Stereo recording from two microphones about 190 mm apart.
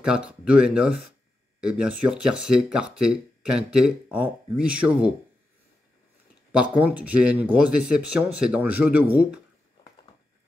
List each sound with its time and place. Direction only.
0.0 s speech: 5° right (ahead or behind)
6.8 s speech: 10° right (ahead or behind)